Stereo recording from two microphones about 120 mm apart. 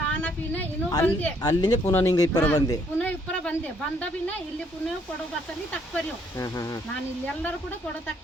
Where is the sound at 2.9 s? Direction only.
10° left (ahead or behind).